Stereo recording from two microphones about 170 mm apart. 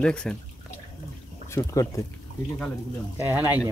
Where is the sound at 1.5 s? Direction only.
20° left (ahead or behind).